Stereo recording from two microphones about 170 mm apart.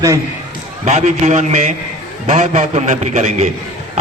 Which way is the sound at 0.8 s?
40° right (ahead or behind).